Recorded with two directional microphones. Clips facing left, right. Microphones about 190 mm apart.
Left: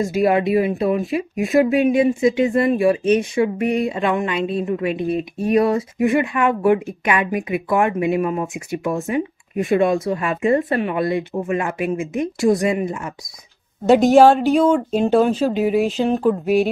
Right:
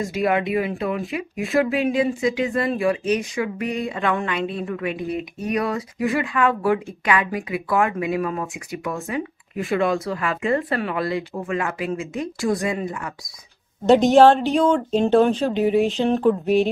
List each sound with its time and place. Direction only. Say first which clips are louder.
0.0 s speech: left 4 dB; 25° left (ahead or behind)
14.1 s speech: left 2 dB; 5° left (ahead or behind)